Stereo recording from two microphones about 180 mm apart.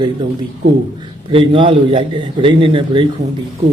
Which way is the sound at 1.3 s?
30° right (ahead or behind).